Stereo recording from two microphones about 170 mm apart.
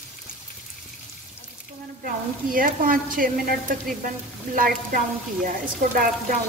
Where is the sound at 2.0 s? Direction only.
55° right (ahead or behind).